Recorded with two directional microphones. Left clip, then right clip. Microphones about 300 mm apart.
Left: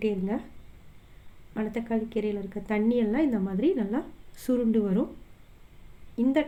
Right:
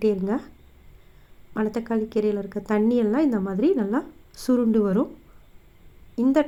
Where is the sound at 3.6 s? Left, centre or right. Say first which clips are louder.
Right 5 dB; centre.